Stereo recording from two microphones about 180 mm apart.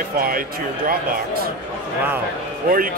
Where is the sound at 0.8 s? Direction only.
55° right (ahead or behind).